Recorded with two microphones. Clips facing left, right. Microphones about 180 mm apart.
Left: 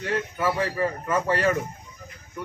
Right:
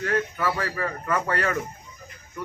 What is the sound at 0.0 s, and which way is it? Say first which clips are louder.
A man's voice: even; 20° left (ahead or behind).